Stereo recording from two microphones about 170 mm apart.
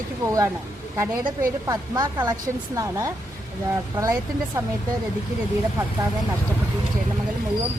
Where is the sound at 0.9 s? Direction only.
15° right (ahead or behind).